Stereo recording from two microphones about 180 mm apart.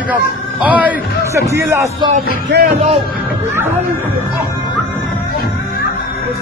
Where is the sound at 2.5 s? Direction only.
65° right (ahead or behind).